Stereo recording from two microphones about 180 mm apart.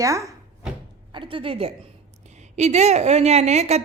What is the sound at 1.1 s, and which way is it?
A woman's voice, 30° right (ahead or behind).